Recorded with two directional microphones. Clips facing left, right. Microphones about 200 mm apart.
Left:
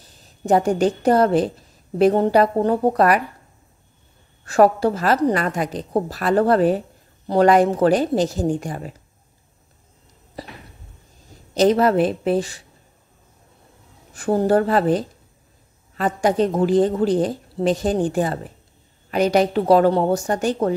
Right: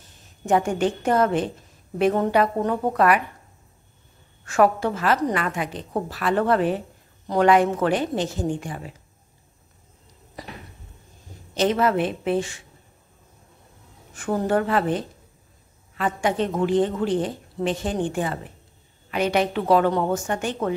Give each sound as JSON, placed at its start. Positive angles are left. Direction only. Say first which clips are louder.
{"t": 0.2, "sound": "a woman's voice", "louder": "left 3 dB", "side_deg": 35}
{"t": 4.5, "sound": "a woman's voice", "louder": "left 4 dB", "side_deg": 35}
{"t": 10.4, "sound": "a sound", "louder": "left 3 dB", "side_deg": 30}
{"t": 11.5, "sound": "a woman's voice", "louder": "left 5 dB", "side_deg": 40}
{"t": 14.1, "sound": "a woman's voice", "louder": "left 5 dB", "side_deg": 35}